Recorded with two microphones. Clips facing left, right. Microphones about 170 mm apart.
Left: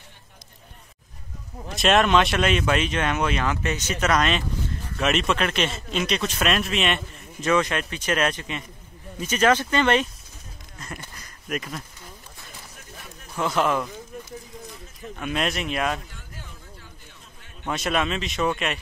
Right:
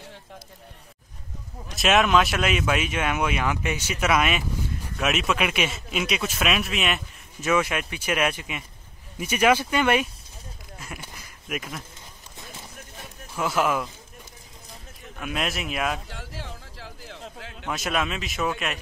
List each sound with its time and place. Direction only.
1.8 s a man's voice: centre (ahead or behind)
10.8 s a sound: 5° right (ahead or behind)
13.4 s speech: 5° right (ahead or behind)
15.1 s speech: 5° right (ahead or behind)
16.1 s a sound: 90° right
17.6 s speech: centre (ahead or behind)